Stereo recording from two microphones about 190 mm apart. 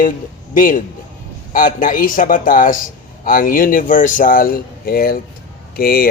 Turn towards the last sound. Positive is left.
turn(degrees=55)  # may be behind; listen again after turning